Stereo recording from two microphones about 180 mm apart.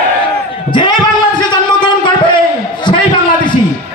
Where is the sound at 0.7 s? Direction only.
25° left (ahead or behind).